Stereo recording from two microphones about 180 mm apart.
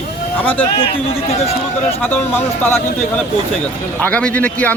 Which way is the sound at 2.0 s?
10° left (ahead or behind).